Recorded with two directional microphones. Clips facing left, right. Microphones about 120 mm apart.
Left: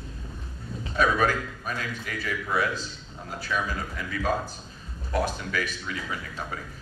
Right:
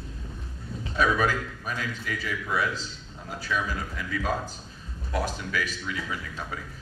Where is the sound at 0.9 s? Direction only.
50° left (ahead or behind).